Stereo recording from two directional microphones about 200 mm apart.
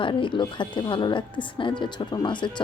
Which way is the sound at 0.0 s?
25° left (ahead or behind).